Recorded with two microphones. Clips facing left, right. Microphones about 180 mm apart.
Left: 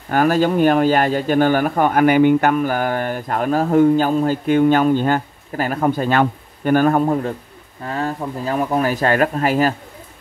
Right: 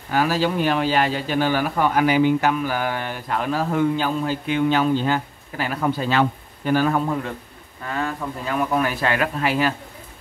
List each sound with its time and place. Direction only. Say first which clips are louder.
0.1 s speech: left 5 dB; 50° left (ahead or behind)